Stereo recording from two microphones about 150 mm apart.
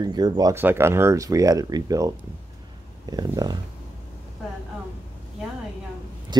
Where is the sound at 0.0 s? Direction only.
25° right (ahead or behind).